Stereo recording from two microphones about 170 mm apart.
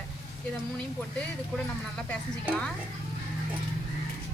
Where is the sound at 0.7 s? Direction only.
5° left (ahead or behind).